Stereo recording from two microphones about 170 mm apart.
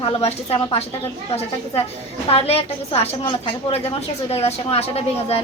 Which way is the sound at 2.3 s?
35° left (ahead or behind).